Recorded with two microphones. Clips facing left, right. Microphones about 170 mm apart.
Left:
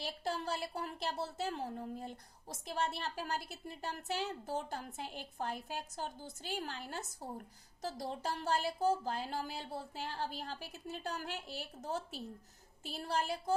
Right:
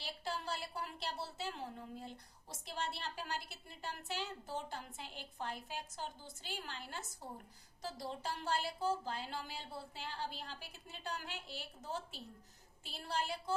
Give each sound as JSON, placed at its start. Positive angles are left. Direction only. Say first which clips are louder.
{"t": 0.0, "sound": "a woman's voice", "louder": "left 4 dB", "side_deg": 45}